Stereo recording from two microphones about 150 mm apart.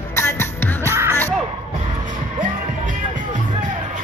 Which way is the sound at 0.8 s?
15° right (ahead or behind).